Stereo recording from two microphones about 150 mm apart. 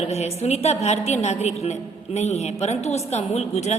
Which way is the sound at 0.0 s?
45° left (ahead or behind).